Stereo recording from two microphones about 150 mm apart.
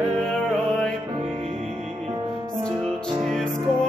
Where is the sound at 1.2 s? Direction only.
45° right (ahead or behind).